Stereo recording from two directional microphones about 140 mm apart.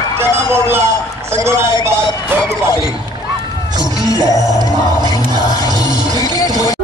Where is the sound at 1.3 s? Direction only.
20° right (ahead or behind).